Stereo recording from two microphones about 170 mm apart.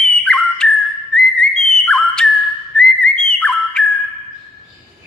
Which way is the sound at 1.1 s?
5° left (ahead or behind).